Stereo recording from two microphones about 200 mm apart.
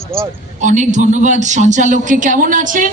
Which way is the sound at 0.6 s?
35° right (ahead or behind).